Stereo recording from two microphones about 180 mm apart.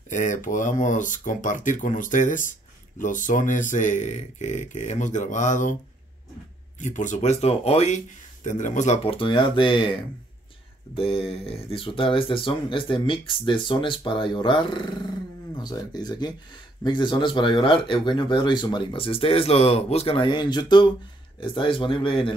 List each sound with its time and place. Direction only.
0.1 s speech: 45° left (ahead or behind)
6.8 s speech: 45° left (ahead or behind); by 9.9 s 30° left (ahead or behind)
11.0 s speech: 30° left (ahead or behind)